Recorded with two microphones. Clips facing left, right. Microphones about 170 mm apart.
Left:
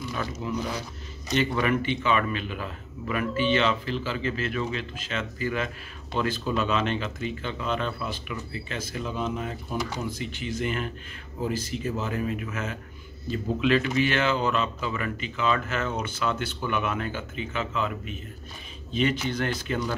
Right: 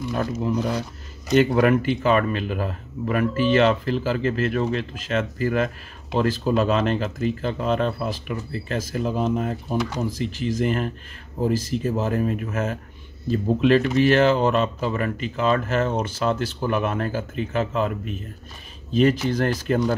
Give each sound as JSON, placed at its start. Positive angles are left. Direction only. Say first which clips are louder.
{"t": 0.1, "sound": "speech", "louder": "right 8 dB", "side_deg": -45}